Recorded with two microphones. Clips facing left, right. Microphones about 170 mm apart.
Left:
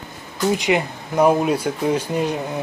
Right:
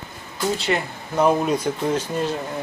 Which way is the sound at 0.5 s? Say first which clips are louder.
Left 4 dB; 15° left (ahead or behind).